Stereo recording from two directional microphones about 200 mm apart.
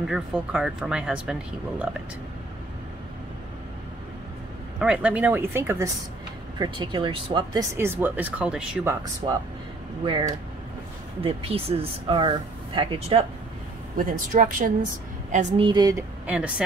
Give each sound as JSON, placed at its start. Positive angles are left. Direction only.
{"t": 0.0, "sound": "speech", "side_deg": -5}
{"t": 4.7, "sound": "speech", "side_deg": -5}
{"t": 6.6, "sound": "speech", "side_deg": -25}
{"t": 7.7, "sound": "speech", "side_deg": -10}
{"t": 9.2, "sound": "speech", "side_deg": -25}
{"t": 13.9, "sound": "speech", "side_deg": -40}
{"t": 15.3, "sound": "speech", "side_deg": -25}
{"t": 16.3, "sound": "speech", "side_deg": -5}